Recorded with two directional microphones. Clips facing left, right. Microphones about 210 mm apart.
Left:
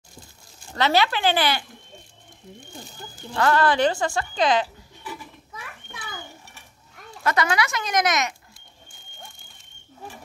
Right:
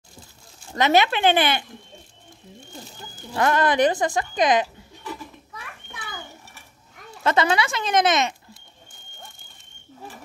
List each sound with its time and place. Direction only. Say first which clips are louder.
0.7 s speech: right 2 dB; 20° right (ahead or behind)
3.3 s speech: even; 20° right (ahead or behind)
7.2 s speech: right 2 dB; 25° right (ahead or behind)